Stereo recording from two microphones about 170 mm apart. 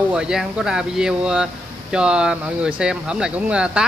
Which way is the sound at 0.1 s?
5° right (ahead or behind).